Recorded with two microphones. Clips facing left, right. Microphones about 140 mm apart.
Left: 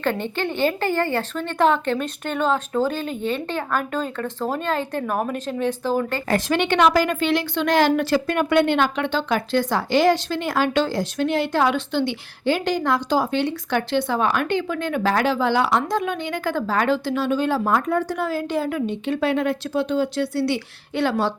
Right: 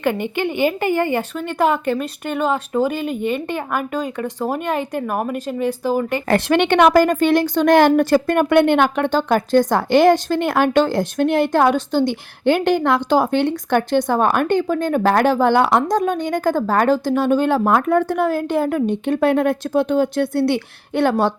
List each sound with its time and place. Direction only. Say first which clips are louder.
0.0 s speech: right 4 dB; 15° right (ahead or behind)
6.2 s speech: right 7 dB; 60° right (ahead or behind); by 12.1 s 40° right (ahead or behind)
12.5 s speech: right 5 dB; 60° right (ahead or behind)